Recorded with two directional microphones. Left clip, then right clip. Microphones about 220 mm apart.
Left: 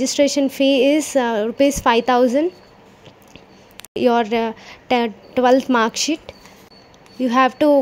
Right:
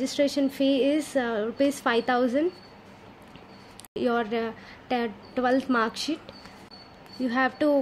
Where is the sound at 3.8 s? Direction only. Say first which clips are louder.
Left 10 dB; 30° left (ahead or behind).